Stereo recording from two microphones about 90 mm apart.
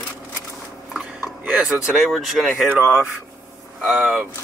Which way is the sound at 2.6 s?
20° right (ahead or behind).